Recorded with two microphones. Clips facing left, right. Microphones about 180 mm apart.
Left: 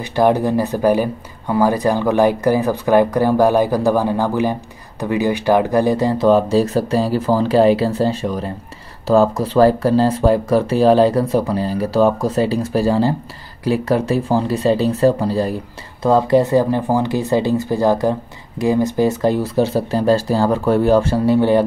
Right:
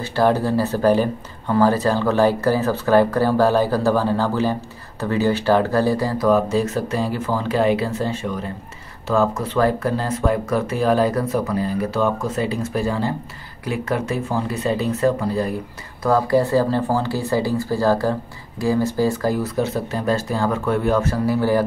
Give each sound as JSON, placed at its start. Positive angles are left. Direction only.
{"t": 0.0, "sound": "speech", "side_deg": 15}